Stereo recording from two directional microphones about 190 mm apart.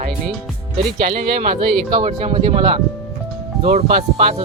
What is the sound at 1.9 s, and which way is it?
Speech, 30° right (ahead or behind).